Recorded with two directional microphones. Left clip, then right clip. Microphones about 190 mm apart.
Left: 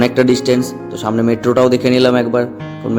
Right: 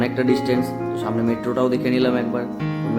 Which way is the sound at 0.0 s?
35° left (ahead or behind).